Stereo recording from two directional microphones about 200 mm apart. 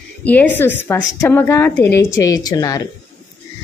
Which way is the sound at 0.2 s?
10° left (ahead or behind).